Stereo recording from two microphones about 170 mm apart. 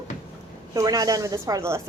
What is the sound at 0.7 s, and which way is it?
A woman's voice, 20° right (ahead or behind).